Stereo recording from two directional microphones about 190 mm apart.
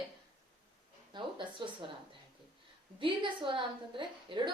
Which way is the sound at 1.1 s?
25° right (ahead or behind).